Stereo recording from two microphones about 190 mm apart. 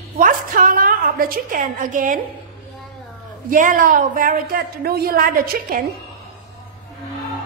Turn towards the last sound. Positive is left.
turn(degrees=-50)  # may be behind; listen again after turning